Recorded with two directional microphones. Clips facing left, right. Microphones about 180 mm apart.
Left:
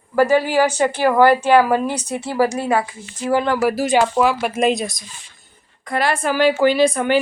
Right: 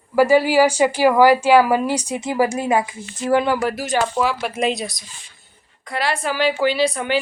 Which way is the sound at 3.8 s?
55° left (ahead or behind).